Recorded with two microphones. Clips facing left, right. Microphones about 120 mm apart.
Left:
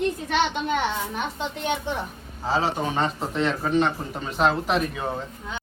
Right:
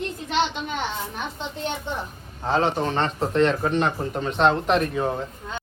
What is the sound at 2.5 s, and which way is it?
Speech, 5° left (ahead or behind).